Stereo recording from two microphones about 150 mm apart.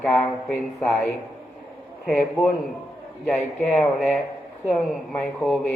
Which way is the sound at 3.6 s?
10° left (ahead or behind).